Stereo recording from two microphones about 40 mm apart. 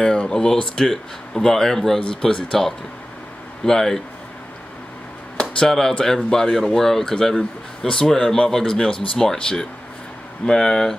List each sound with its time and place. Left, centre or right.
0.0 s speech: centre
5.7 s speech: centre